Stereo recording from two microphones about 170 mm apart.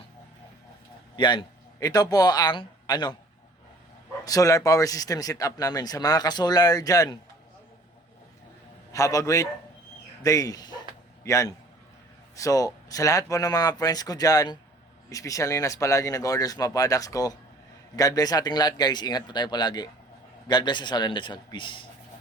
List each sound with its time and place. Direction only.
1.1 s a man's voice: 30° left (ahead or behind)
4.3 s speech: 20° left (ahead or behind)
8.9 s a man's voice: 20° left (ahead or behind)